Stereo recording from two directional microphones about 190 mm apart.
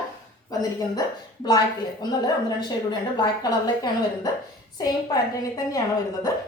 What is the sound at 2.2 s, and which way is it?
A woman's voice, 20° left (ahead or behind).